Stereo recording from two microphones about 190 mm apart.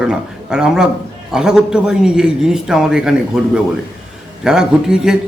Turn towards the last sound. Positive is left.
turn(degrees=-5)  # may be behind; listen again after turning